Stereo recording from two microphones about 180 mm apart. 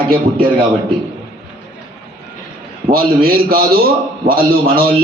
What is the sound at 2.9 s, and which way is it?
A man's voice, 55° right (ahead or behind).